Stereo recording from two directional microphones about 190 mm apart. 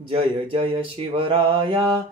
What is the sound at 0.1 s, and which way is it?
Mantra, 25° right (ahead or behind).